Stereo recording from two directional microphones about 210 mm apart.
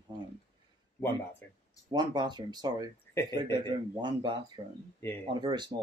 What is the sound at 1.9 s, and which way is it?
Speech, 20° right (ahead or behind).